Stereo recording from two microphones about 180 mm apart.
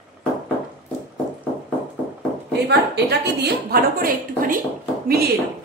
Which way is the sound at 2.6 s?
65° right (ahead or behind).